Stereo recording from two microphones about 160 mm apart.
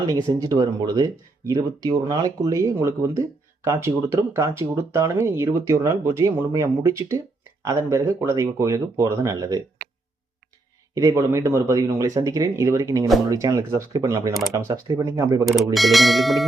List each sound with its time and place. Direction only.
0.0 s speech: 25° right (ahead or behind)
10.9 s speech: 20° right (ahead or behind)
15.4 s speech: centre (ahead or behind)